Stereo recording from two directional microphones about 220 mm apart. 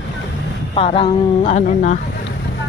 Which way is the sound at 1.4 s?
35° left (ahead or behind).